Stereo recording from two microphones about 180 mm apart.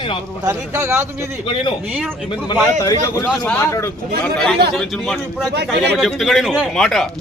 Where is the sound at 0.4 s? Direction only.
15° right (ahead or behind).